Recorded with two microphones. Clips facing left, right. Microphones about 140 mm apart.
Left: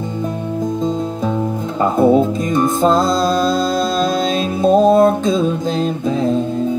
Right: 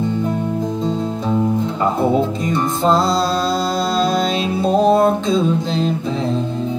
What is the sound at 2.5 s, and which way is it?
Music, 50° left (ahead or behind).